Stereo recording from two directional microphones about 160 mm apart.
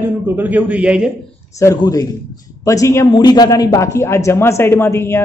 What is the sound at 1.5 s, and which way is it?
Speech, 20° left (ahead or behind).